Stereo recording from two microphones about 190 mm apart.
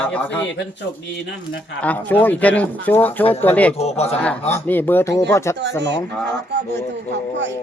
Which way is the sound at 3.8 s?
35° left (ahead or behind).